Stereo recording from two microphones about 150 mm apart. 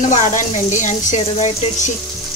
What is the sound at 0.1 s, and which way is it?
Speech, 55° left (ahead or behind).